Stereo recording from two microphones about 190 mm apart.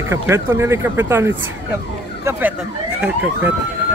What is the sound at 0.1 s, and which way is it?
Speech, 15° right (ahead or behind).